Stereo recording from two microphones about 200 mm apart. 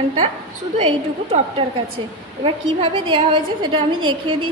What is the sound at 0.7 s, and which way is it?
Speech, 30° right (ahead or behind).